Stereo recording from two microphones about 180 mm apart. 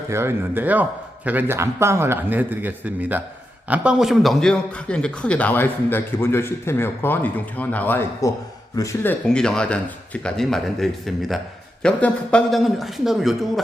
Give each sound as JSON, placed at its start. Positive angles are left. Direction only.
{"t": 0.1, "sound": "a man's voice", "side_deg": -15}
{"t": 9.2, "sound": "speech", "side_deg": 5}